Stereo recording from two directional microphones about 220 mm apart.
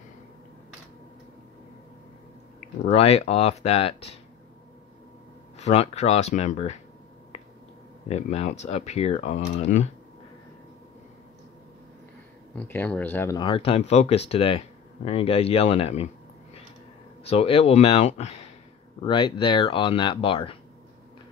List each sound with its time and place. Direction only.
2.9 s speech: 30° left (ahead or behind)
5.6 s speech: 30° left (ahead or behind)
8.1 s speech: 30° left (ahead or behind)
12.5 s speech: 10° left (ahead or behind); by 16.1 s 25° left (ahead or behind)
17.3 s speech: 25° left (ahead or behind)